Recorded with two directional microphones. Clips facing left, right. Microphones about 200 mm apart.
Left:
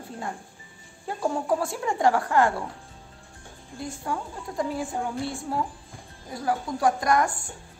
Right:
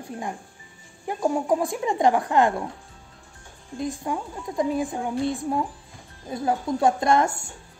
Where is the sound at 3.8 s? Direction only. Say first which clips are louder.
Right 4 dB; 20° right (ahead or behind).